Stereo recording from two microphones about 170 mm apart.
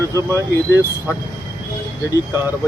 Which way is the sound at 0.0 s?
20° right (ahead or behind).